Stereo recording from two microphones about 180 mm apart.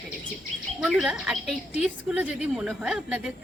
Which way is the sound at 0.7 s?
5° right (ahead or behind).